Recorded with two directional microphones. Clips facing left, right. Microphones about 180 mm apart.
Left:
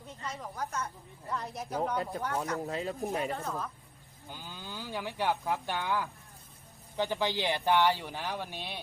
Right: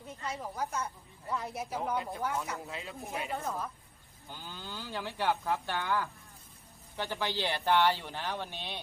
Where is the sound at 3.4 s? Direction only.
5° right (ahead or behind).